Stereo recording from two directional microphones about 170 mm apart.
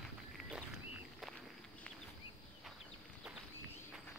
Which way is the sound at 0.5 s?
5° right (ahead or behind).